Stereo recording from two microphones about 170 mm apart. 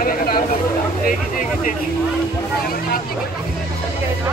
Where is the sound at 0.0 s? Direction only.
55° left (ahead or behind).